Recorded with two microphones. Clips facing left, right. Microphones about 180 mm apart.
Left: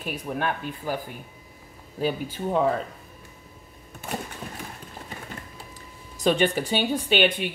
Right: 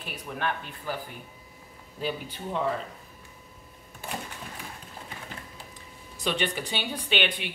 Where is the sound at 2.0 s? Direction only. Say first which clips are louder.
Left 6 dB; 45° left (ahead or behind).